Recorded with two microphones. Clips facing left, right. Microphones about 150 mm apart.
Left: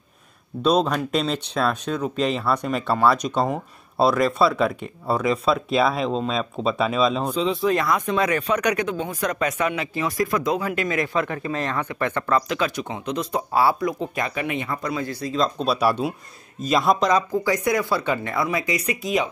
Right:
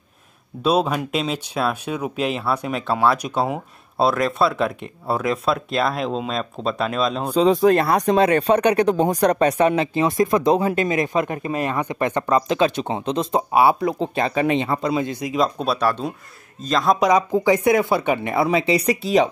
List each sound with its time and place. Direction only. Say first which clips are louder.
0.7 s speech: even; 5° right (ahead or behind)
7.3 s speech: right 6 dB; 45° right (ahead or behind); by 15.5 s 15° right (ahead or behind)
15.6 s speech: even; centre (ahead or behind)
17.0 s speech: right 3 dB; 15° right (ahead or behind); by 19.2 s 35° right (ahead or behind)